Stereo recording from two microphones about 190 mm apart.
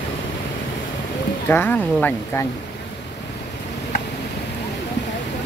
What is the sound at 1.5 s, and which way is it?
Speech, 10° left (ahead or behind).